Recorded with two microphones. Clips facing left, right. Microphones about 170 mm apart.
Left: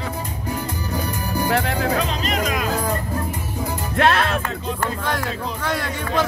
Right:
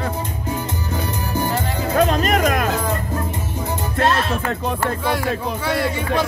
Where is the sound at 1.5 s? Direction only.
70° left (ahead or behind).